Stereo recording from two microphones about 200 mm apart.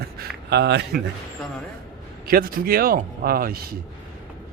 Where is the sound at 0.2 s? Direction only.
55° right (ahead or behind).